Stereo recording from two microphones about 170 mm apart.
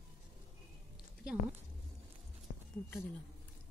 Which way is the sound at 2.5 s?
45° left (ahead or behind).